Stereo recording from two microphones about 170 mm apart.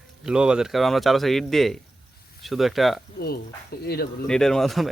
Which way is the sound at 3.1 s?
65° left (ahead or behind).